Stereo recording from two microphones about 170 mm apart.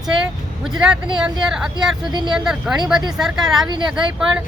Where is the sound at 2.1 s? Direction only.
25° right (ahead or behind).